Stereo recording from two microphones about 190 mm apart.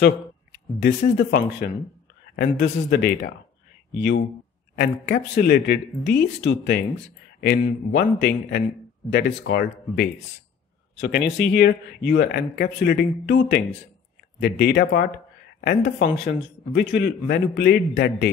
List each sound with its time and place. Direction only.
0.8 s speech: 55° left (ahead or behind)
11.0 s speech: 65° left (ahead or behind)